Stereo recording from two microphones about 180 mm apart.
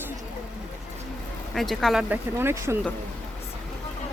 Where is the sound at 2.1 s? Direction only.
10° right (ahead or behind).